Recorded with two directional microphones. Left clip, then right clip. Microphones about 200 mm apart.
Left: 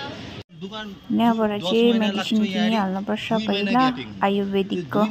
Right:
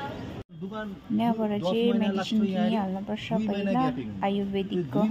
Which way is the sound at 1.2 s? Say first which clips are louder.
Left 7 dB; 15° left (ahead or behind).